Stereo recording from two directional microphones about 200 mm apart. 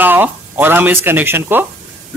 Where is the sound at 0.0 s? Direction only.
10° right (ahead or behind).